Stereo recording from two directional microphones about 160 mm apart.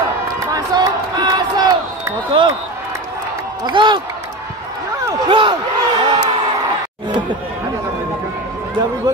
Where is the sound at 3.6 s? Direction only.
30° right (ahead or behind).